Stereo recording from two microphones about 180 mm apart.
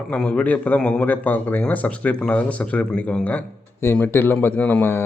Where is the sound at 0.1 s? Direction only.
5° left (ahead or behind).